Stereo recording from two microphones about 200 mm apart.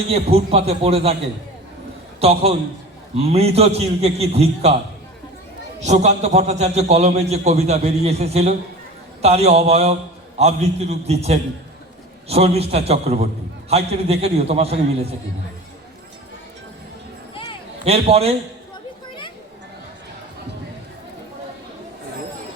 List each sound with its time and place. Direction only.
0.1 s a man's voice: 30° right (ahead or behind)
2.2 s a man's voice: 30° right (ahead or behind)
5.8 s a man's voice: 35° right (ahead or behind)
17.3 s a sound: 25° left (ahead or behind)
17.8 s a man's voice: 30° right (ahead or behind)